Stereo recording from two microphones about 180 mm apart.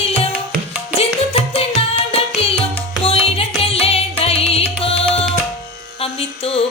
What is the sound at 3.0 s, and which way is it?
Music, 35° left (ahead or behind).